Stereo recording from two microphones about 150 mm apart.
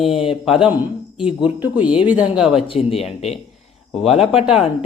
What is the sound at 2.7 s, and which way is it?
Speech, 40° left (ahead or behind).